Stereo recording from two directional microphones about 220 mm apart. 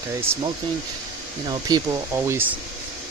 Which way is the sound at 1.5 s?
20° right (ahead or behind).